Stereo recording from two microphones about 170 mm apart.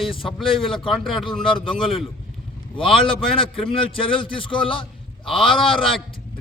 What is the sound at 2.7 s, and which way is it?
Speech, 30° left (ahead or behind).